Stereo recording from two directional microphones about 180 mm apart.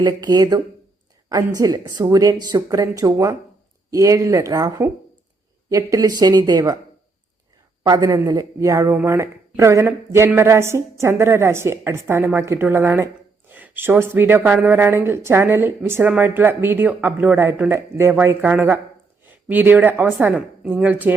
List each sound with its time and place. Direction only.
0.0 s speech: 20° right (ahead or behind)
7.9 s speech: 20° right (ahead or behind)